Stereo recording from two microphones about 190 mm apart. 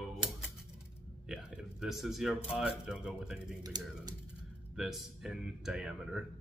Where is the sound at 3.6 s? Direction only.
20° right (ahead or behind).